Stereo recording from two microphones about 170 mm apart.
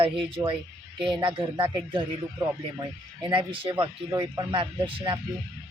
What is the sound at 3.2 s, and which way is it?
Speech, 25° right (ahead or behind).